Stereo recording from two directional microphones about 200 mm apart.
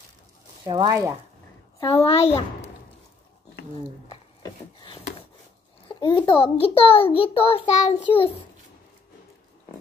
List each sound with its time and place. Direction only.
0.7 s speech: 25° right (ahead or behind)
1.8 s a child's voice: 15° left (ahead or behind)
2.0 s a child's voice: 30° left (ahead or behind)
4.1 s a sound: 25° left (ahead or behind)
5.9 s a child's voice: 25° left (ahead or behind)